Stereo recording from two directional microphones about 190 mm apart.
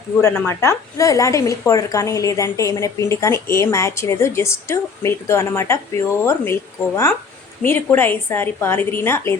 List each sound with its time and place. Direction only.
0.2 s a woman's voice: 10° left (ahead or behind)